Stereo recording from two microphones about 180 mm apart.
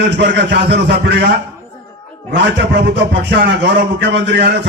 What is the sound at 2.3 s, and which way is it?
A man's voice, 70° right (ahead or behind).